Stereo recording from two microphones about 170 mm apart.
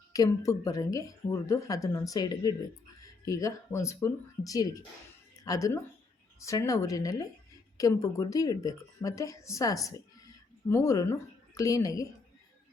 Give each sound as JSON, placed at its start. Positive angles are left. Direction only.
{"t": 0.1, "sound": "a woman's voice", "side_deg": 20}